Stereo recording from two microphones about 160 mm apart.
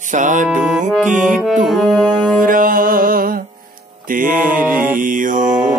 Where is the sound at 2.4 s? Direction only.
60° right (ahead or behind).